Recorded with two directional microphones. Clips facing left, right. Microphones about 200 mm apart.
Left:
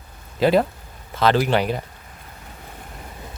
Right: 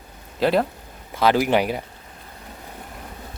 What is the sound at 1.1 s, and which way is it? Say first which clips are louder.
Speech: even; 10° right (ahead or behind).